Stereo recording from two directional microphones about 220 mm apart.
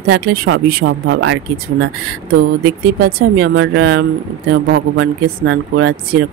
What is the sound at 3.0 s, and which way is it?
Speech, 45° right (ahead or behind).